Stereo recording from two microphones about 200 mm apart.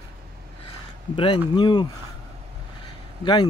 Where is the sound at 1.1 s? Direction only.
25° left (ahead or behind).